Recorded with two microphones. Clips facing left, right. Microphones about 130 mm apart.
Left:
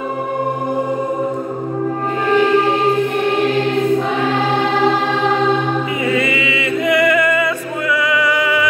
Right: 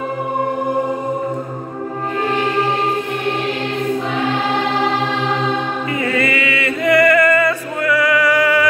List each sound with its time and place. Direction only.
6.0 s music: 15° left (ahead or behind)